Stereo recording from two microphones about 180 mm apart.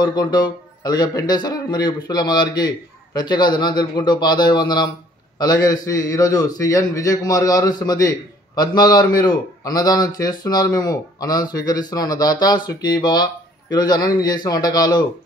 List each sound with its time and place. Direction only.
0.0 s a man's voice: 25° left (ahead or behind)